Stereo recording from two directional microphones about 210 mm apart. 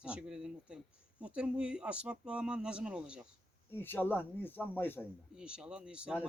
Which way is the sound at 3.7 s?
10° left (ahead or behind).